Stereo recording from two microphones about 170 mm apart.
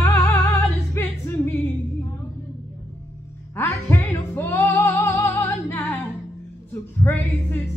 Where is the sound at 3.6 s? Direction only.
10° left (ahead or behind).